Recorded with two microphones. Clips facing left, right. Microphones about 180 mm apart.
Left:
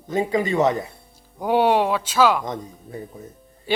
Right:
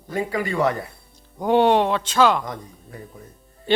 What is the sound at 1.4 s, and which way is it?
Speech, 5° left (ahead or behind).